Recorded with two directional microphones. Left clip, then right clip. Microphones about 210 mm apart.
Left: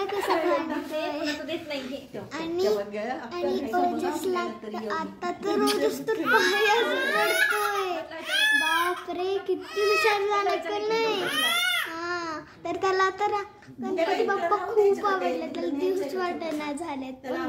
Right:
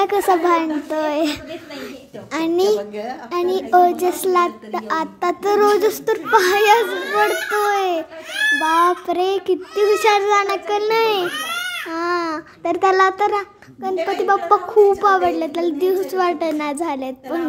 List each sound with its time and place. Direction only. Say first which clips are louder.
0.0 s a child's voice: right 10 dB; 40° right (ahead or behind)